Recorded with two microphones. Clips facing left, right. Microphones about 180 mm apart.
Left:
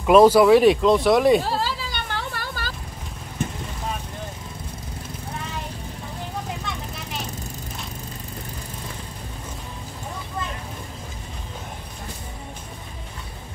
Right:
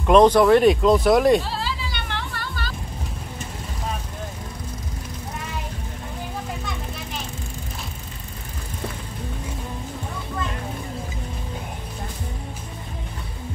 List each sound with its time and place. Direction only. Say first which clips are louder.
0.0 s speech: left 1 dB; 5° left (ahead or behind)
1.4 s music: left 3 dB; 45° left (ahead or behind)